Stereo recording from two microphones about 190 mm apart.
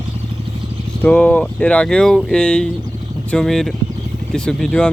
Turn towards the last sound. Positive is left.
turn(degrees=5)  # may be behind; listen again after turning